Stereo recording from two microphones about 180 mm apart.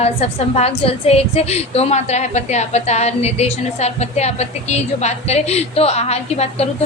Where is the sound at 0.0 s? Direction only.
35° left (ahead or behind).